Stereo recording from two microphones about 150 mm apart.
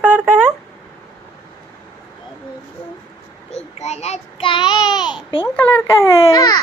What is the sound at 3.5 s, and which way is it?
A child's voice, 45° left (ahead or behind).